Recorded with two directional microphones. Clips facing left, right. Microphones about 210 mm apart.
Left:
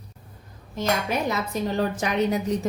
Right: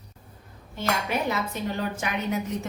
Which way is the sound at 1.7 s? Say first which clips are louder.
Left 8 dB; 40° left (ahead or behind).